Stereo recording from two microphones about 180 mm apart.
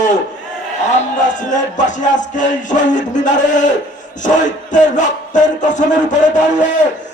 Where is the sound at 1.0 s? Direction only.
45° left (ahead or behind).